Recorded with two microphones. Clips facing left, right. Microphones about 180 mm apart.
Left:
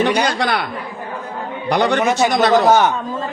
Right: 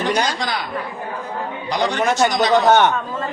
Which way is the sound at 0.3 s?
65° left (ahead or behind).